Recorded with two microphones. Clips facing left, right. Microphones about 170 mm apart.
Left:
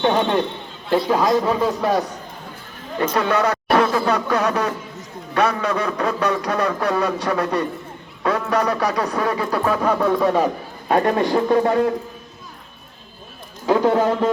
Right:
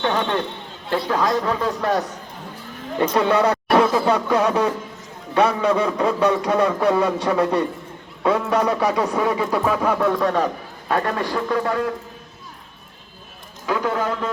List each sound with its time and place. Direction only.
0.0 s a man's voice: 25° left (ahead or behind)
0.9 s a man's voice: 15° left (ahead or behind)
3.2 s speech: 25° right (ahead or behind)
9.7 s a man's voice: 5° right (ahead or behind)
10.8 s a man's voice: 25° left (ahead or behind)
13.7 s a man's voice: 30° left (ahead or behind)